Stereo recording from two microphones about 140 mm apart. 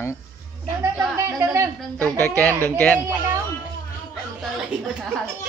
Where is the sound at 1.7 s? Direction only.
10° left (ahead or behind).